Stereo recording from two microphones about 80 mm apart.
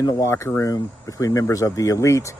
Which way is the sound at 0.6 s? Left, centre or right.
Left.